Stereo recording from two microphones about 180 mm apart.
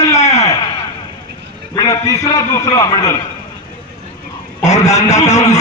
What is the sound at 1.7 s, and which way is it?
A man's voice, 20° left (ahead or behind).